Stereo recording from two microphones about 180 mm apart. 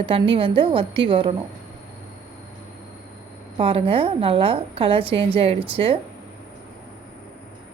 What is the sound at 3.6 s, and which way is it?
A woman's voice, 30° right (ahead or behind).